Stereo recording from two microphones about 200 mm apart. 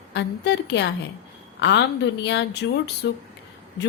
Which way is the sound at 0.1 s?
60° left (ahead or behind).